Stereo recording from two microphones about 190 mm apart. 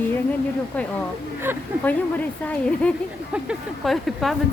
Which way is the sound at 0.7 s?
5° left (ahead or behind).